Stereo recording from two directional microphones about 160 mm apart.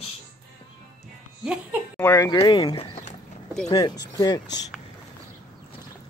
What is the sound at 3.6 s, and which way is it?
Speech, 25° left (ahead or behind).